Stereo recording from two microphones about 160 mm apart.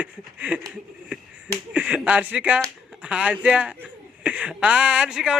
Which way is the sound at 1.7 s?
10° right (ahead or behind).